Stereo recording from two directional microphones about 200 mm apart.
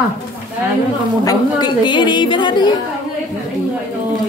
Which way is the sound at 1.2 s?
20° left (ahead or behind).